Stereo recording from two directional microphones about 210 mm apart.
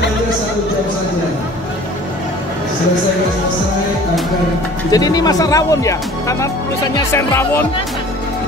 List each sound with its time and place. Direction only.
4.9 s speech: 15° left (ahead or behind)